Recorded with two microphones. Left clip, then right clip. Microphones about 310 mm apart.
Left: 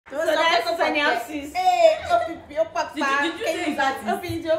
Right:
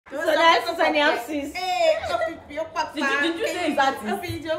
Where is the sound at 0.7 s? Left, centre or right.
Right.